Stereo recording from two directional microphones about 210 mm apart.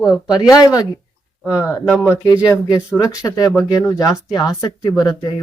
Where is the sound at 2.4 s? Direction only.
Centre (ahead or behind).